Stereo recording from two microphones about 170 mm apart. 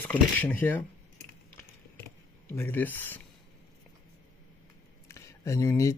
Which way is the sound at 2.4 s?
10° left (ahead or behind).